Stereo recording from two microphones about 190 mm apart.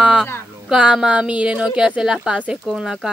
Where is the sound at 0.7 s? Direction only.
5° right (ahead or behind).